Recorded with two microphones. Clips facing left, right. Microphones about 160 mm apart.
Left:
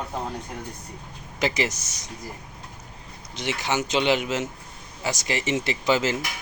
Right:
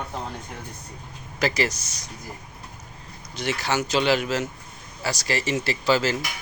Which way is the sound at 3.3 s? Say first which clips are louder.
Right 1 dB; 20° left (ahead or behind).